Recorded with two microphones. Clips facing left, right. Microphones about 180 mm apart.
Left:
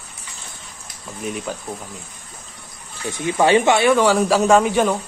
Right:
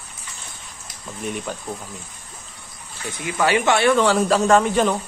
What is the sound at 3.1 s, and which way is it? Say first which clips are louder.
Speech: left 5 dB; 25° left (ahead or behind).